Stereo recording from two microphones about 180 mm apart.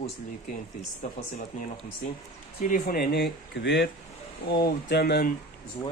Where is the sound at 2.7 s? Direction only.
60° left (ahead or behind).